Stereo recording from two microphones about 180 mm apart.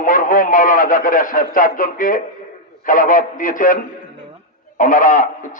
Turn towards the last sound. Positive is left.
turn(degrees=45)  # may be behind; listen again after turning